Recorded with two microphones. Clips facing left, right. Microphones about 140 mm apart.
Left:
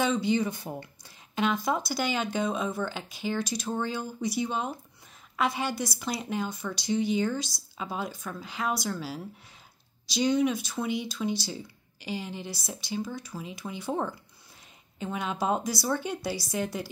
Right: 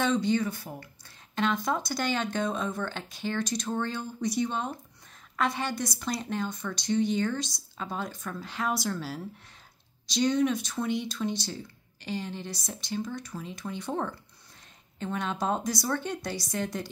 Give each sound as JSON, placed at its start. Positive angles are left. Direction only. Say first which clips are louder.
{"t": 0.0, "sound": "speech", "louder": "even", "side_deg": 5}
{"t": 1.0, "sound": "speech", "louder": "even", "side_deg": 5}